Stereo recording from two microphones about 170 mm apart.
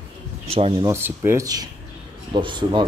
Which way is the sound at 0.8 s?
15° right (ahead or behind).